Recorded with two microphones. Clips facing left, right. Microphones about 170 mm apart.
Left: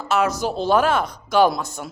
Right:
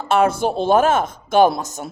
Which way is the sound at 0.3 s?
55° right (ahead or behind).